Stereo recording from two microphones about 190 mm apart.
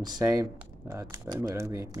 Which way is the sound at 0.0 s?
20° right (ahead or behind).